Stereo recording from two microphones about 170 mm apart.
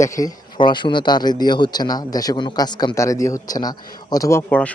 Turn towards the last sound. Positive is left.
turn(degrees=10)  # may be behind; listen again after turning